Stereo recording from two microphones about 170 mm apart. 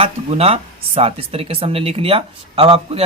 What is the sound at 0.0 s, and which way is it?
Speech, 35° right (ahead or behind).